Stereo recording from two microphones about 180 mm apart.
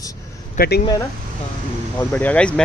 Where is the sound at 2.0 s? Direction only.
10° left (ahead or behind).